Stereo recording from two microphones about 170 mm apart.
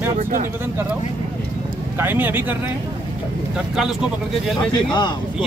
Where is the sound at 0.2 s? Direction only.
50° right (ahead or behind).